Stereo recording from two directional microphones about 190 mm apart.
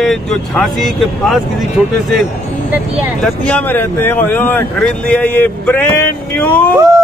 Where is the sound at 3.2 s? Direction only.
5° left (ahead or behind).